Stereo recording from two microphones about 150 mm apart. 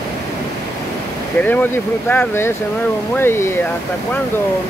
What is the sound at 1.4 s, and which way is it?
Speech, 10° left (ahead or behind).